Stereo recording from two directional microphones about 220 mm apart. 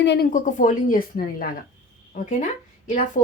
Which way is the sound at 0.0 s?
50° left (ahead or behind).